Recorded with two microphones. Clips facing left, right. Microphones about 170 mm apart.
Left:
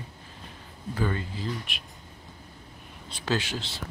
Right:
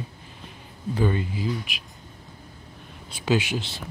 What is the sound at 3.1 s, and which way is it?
Speech, 15° right (ahead or behind).